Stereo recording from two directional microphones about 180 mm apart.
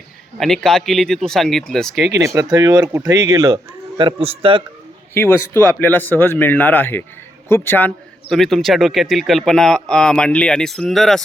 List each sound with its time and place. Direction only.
0.3 s a man's voice: centre (ahead or behind)
2.2 s speech: 15° right (ahead or behind)
5.1 s a man's voice: 15° left (ahead or behind)